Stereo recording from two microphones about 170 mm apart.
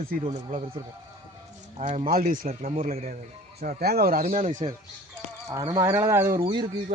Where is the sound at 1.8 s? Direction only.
45° right (ahead or behind).